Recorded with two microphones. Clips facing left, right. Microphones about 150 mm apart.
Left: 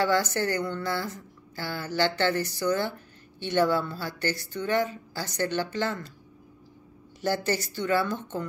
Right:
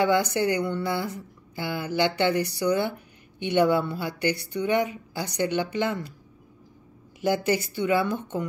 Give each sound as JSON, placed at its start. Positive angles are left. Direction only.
{"t": 0.0, "sound": "speech", "side_deg": -15}
{"t": 7.2, "sound": "speech", "side_deg": -10}